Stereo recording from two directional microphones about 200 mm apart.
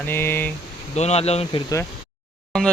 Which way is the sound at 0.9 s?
35° left (ahead or behind).